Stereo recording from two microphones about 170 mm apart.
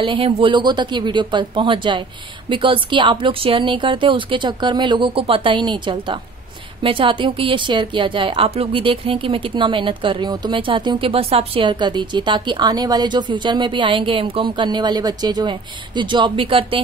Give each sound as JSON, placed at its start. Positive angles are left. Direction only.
{"t": 0.0, "sound": "a woman's voice", "side_deg": -30}